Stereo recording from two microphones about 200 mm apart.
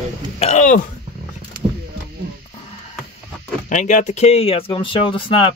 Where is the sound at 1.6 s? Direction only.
25° right (ahead or behind).